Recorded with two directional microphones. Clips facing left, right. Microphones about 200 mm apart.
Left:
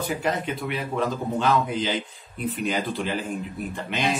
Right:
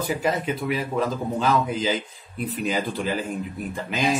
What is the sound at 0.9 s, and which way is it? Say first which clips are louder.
A man's voice: right 1 dB; 5° right (ahead or behind).